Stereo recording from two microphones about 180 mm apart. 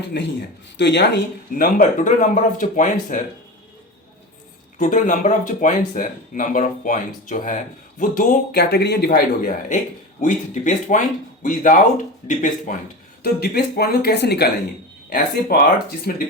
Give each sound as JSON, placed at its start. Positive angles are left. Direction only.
{"t": 0.1, "sound": "a man's voice", "side_deg": 75}
{"t": 4.8, "sound": "speech", "side_deg": 45}
{"t": 13.2, "sound": "speech", "side_deg": 60}
{"t": 15.5, "sound": "speech", "side_deg": 60}